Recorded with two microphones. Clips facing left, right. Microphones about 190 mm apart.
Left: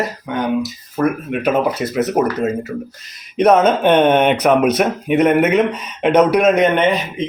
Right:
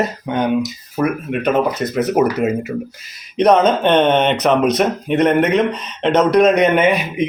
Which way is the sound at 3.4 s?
5° left (ahead or behind).